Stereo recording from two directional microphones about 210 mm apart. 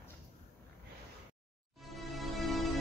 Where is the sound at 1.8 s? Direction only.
Centre (ahead or behind).